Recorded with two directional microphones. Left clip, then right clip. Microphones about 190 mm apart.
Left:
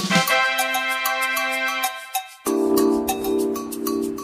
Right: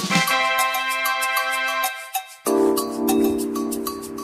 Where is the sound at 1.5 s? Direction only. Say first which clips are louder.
Right 1 dB; centre (ahead or behind).